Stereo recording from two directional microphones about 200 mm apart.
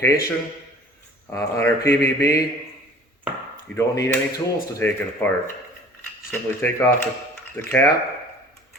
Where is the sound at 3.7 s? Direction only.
10° left (ahead or behind).